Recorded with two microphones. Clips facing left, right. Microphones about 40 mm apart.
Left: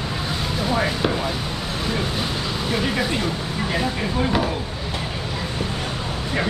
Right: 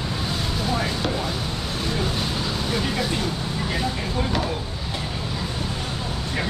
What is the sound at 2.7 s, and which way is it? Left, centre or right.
Speech, centre.